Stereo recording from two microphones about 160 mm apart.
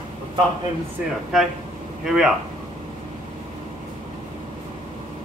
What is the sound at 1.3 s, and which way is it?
Speech, centre (ahead or behind).